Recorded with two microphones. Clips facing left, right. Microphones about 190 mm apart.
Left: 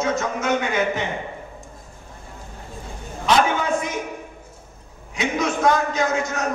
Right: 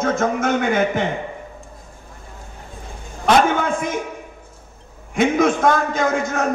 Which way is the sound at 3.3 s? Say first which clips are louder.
Right 3 dB; 55° right (ahead or behind).